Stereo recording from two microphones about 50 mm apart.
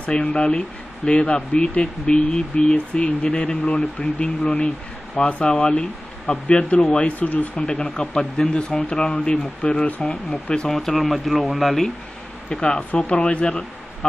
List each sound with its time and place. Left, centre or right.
0.0 s speech: left
7.6 s speech: centre
10.7 s speech: centre
12.4 s speech: centre